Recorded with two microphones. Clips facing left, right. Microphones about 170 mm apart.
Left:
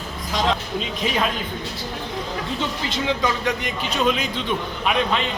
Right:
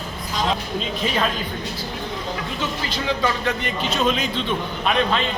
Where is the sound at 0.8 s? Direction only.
10° left (ahead or behind).